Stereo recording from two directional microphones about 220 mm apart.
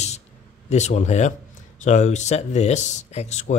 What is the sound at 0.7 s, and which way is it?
Speech, 30° left (ahead or behind).